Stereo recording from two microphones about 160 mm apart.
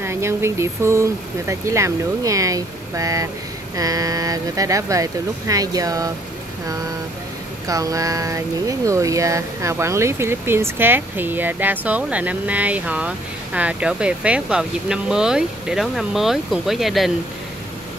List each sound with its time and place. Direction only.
0.0 s speech: 15° right (ahead or behind)
7.6 s speech: 20° right (ahead or behind); by 17.1 s centre (ahead or behind)